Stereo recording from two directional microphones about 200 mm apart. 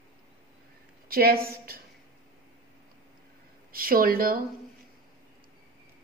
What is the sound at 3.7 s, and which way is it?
Speech, 45° right (ahead or behind).